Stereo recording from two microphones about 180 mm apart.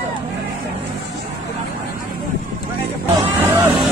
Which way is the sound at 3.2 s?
15° right (ahead or behind).